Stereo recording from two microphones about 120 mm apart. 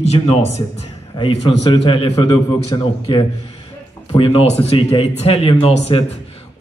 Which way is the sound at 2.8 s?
45° left (ahead or behind).